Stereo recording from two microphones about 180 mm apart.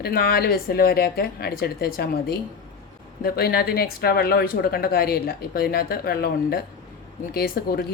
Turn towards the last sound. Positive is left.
turn(degrees=55)  # may be behind; listen again after turning